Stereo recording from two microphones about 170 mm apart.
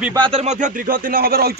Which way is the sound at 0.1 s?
30° right (ahead or behind).